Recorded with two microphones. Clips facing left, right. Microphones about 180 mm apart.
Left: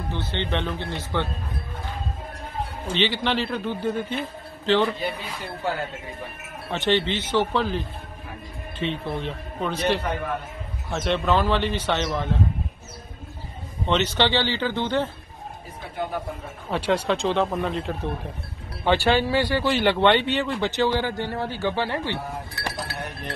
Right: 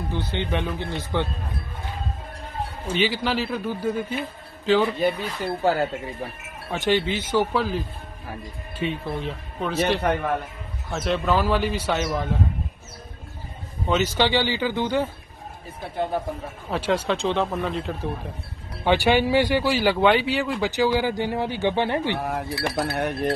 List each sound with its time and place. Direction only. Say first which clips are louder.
0.1 s speech: right 1 dB; 15° right (ahead or behind)
2.9 s speech: right 1 dB; 5° right (ahead or behind)
5.6 s speech: right 6 dB; 40° right (ahead or behind)
6.7 s speech: even; 10° right (ahead or behind)
10.1 s speech: right 5 dB; 60° right (ahead or behind)
10.9 s speech: even; centre (ahead or behind)
13.8 s speech: right 1 dB; 5° right (ahead or behind)
16.7 s speech: left 1 dB; centre (ahead or behind)
18.9 s speech: right 1 dB; 15° right (ahead or behind)
22.2 s speech: right 6 dB; 75° right (ahead or behind)